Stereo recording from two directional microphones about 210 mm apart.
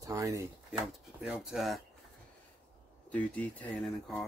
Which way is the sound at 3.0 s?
5° left (ahead or behind).